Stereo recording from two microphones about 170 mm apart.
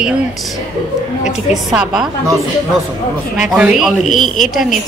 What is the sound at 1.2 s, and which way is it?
Speech, centre (ahead or behind).